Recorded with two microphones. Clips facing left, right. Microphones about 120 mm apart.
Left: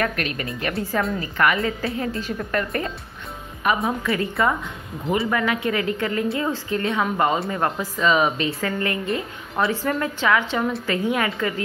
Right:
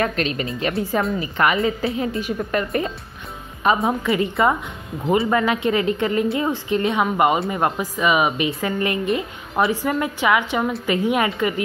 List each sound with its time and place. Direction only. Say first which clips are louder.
0.0 s a woman's voice: right 3 dB; 25° right (ahead or behind)